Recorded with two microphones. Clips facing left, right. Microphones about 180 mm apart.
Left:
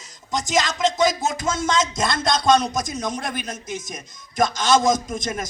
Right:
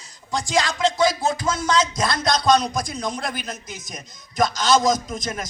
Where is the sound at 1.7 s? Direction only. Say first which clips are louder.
Right 1 dB; 50° left (ahead or behind).